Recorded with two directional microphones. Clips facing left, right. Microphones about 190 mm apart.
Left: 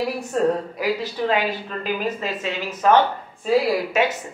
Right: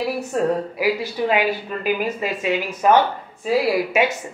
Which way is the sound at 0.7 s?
10° right (ahead or behind).